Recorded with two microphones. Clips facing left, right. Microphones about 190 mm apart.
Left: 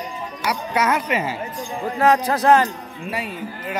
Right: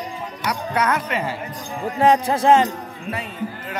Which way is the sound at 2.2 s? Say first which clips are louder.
Even; 25° right (ahead or behind).